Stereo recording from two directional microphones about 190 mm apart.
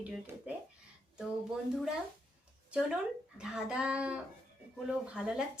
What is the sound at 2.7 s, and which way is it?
A woman's voice, 5° right (ahead or behind).